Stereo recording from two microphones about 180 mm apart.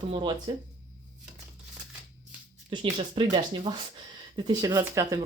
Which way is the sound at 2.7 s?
25° right (ahead or behind).